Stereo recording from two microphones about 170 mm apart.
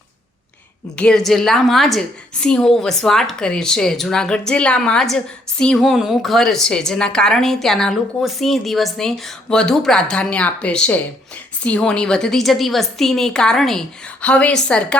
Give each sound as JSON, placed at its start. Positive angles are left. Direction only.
{"t": 0.9, "sound": "a woman's voice", "side_deg": 5}